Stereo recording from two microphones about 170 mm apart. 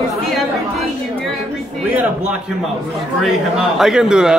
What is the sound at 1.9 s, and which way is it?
A man's voice, 5° right (ahead or behind).